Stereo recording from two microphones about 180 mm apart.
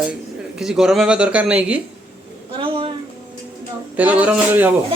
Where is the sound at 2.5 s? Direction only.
30° right (ahead or behind).